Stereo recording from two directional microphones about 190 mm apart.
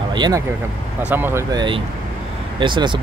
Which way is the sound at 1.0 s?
10° right (ahead or behind).